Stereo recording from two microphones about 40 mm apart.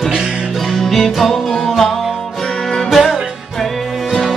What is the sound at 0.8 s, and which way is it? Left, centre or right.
Music, centre.